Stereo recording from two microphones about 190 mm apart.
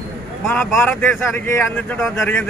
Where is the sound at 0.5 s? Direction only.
5° left (ahead or behind).